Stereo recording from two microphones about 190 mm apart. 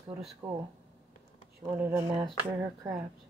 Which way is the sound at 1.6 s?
15° right (ahead or behind).